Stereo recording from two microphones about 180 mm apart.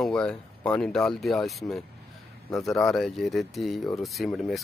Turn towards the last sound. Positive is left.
turn(degrees=0)  # may be behind; listen again after turning